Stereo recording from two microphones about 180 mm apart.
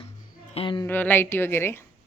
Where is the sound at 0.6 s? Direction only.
25° left (ahead or behind).